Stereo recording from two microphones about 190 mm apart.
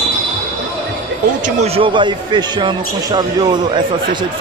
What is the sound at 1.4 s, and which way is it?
Speech, 35° right (ahead or behind).